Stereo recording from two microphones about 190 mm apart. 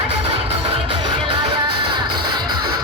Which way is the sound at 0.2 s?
30° right (ahead or behind).